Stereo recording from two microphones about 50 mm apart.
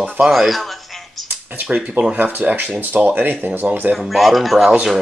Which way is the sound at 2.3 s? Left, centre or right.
Right.